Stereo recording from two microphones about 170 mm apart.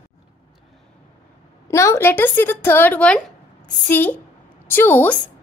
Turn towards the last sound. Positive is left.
turn(degrees=10)  # may be behind; listen again after turning